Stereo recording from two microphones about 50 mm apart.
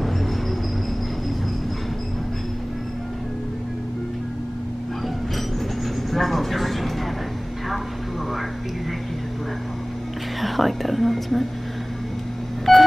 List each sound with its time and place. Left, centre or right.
6.1 s vehicle: centre
10.4 s whispering: centre
12.7 s telephone dialing: centre